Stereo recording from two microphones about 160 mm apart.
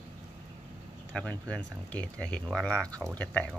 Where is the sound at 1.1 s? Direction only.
5° left (ahead or behind).